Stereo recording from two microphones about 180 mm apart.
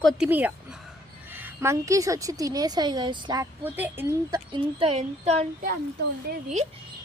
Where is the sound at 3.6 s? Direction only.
10° right (ahead or behind); by 5.4 s 35° right (ahead or behind).